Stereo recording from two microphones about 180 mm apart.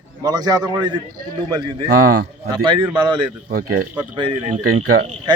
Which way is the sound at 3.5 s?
50° right (ahead or behind).